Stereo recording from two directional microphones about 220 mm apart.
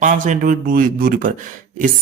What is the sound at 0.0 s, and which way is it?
A man's voice, 35° right (ahead or behind).